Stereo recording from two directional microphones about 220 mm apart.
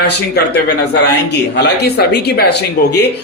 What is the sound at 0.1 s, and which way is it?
A man's voice, 45° left (ahead or behind).